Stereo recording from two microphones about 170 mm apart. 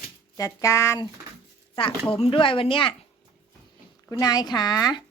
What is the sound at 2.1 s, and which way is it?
Speech, 30° left (ahead or behind).